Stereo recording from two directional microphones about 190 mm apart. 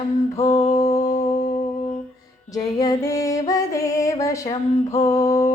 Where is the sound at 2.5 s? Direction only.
20° left (ahead or behind).